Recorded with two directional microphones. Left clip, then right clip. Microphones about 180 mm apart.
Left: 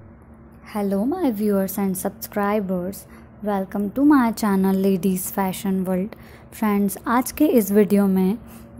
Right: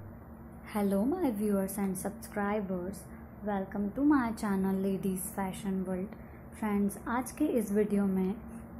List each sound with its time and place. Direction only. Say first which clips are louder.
0.7 s a woman's voice: left 8 dB; 25° left (ahead or behind)
1.2 s a woman's voice: left 10 dB; 40° left (ahead or behind)